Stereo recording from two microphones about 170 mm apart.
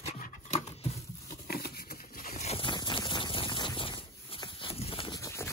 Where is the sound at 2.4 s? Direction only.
30° left (ahead or behind).